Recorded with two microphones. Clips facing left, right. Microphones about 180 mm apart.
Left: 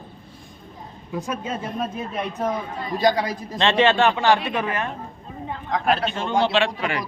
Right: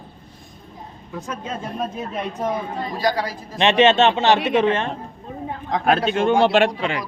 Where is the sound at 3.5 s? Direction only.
20° right (ahead or behind).